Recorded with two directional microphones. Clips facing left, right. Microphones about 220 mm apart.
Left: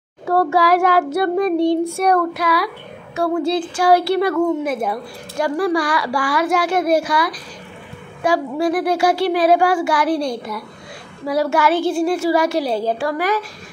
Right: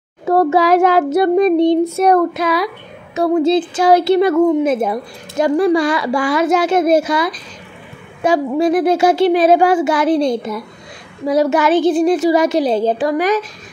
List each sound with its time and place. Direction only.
0.2 s child singing: 20° right (ahead or behind)